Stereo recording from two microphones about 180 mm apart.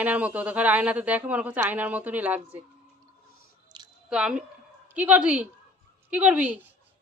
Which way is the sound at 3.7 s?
25° right (ahead or behind).